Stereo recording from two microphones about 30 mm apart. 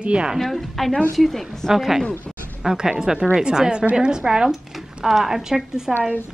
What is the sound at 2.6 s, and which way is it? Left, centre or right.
A woman's voice, right.